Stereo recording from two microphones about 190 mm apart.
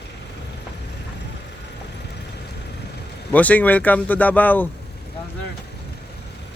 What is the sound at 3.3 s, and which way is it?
Speech, 10° left (ahead or behind).